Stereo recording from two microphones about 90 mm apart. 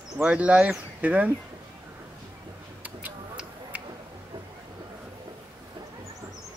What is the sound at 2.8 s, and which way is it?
Tick-tock, 15° right (ahead or behind).